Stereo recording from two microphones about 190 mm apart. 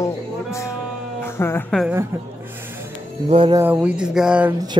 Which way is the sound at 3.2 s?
30° right (ahead or behind).